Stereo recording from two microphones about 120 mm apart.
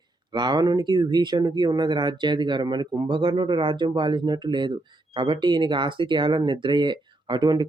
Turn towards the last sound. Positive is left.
turn(degrees=-35)  # may be behind; listen again after turning